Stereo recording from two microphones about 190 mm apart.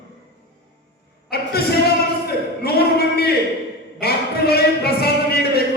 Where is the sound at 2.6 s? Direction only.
55° left (ahead or behind).